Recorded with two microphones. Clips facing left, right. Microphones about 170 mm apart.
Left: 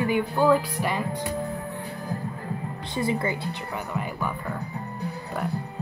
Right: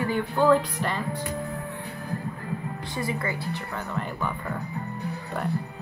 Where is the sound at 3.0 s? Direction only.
25° left (ahead or behind).